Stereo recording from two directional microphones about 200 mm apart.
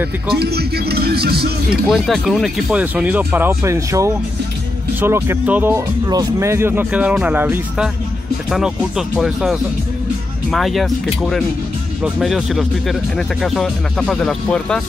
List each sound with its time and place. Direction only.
0.3 s speech: 55° right (ahead or behind)
1.9 s speech: centre (ahead or behind)